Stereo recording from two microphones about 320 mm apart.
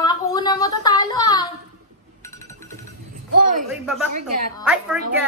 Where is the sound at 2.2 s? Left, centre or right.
Centre.